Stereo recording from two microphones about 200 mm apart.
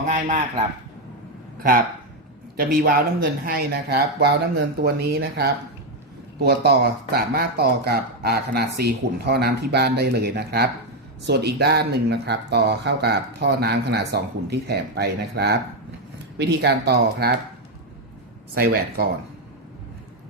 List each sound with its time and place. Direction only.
0.0 s a man's voice: 40° right (ahead or behind)
2.6 s speech: 45° right (ahead or behind)
18.5 s speech: 50° right (ahead or behind)